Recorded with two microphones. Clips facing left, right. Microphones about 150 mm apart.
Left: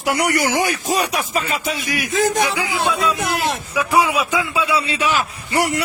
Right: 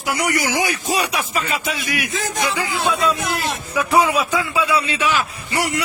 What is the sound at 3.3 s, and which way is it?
Speech, 60° left (ahead or behind).